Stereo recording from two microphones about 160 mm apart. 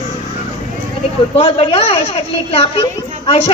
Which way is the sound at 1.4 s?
40° left (ahead or behind).